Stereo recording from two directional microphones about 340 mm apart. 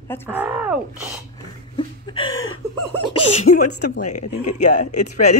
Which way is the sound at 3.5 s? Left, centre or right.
Left.